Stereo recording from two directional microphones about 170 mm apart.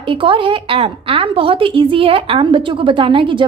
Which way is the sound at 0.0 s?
30° right (ahead or behind).